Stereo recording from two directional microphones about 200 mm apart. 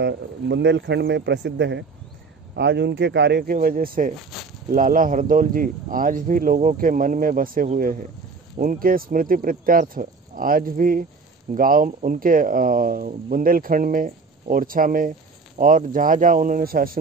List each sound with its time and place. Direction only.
0.0 s speech: 60° right (ahead or behind); by 4.1 s 45° right (ahead or behind)
4.2 s a sound: centre (ahead or behind)
4.6 s speech: 40° right (ahead or behind)